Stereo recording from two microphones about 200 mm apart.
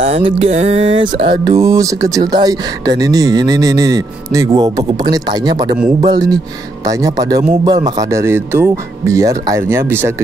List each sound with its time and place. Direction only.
0.0 s music: 30° right (ahead or behind)
7.0 s speech: 20° right (ahead or behind)